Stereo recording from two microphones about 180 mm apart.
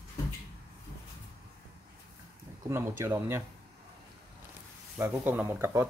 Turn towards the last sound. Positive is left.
turn(degrees=-15)  # may be behind; listen again after turning